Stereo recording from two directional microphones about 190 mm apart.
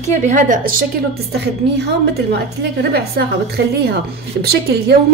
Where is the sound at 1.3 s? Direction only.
60° right (ahead or behind).